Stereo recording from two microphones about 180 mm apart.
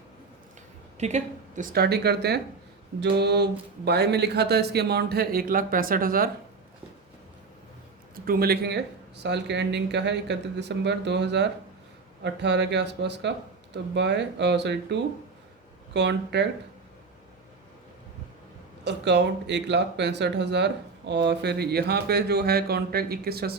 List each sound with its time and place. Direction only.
0.9 s speech: 40° right (ahead or behind)
8.1 s speech: 55° right (ahead or behind); by 16.5 s 70° right (ahead or behind)
18.9 s speech: 70° right (ahead or behind)